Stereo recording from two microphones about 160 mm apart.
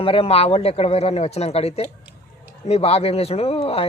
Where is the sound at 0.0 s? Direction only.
35° left (ahead or behind).